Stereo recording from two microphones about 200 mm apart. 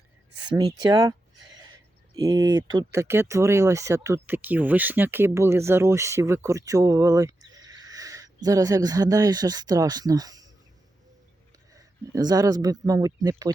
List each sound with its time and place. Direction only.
0.5 s speech: 20° right (ahead or behind)
11.7 s speech: 15° right (ahead or behind)